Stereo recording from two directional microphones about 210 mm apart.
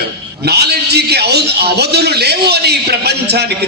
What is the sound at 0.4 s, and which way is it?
A man's voice, 50° right (ahead or behind).